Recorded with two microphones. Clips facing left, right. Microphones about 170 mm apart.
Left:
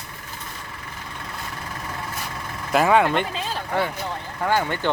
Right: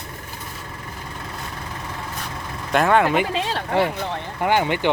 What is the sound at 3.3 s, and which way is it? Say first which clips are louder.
Speech: right 5 dB; 75° right (ahead or behind).